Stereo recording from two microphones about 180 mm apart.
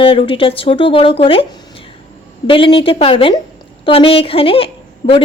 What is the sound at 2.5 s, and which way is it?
A woman's voice, 30° left (ahead or behind).